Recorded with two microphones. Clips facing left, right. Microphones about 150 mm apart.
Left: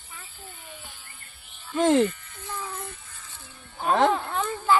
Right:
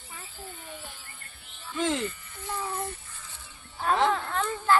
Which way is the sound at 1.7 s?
50° left (ahead or behind).